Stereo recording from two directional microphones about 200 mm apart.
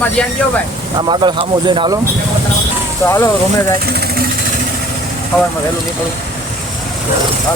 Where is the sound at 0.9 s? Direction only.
25° right (ahead or behind).